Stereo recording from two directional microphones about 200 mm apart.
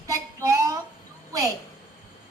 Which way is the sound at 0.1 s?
15° right (ahead or behind).